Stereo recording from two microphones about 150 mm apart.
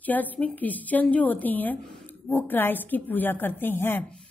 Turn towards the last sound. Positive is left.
turn(degrees=15)  # may be behind; listen again after turning